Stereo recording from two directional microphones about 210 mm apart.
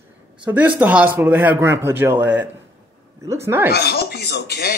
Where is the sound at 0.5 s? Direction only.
10° right (ahead or behind).